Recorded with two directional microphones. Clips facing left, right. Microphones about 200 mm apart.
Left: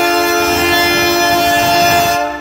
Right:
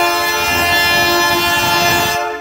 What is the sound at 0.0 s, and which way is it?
Train, 50° left (ahead or behind).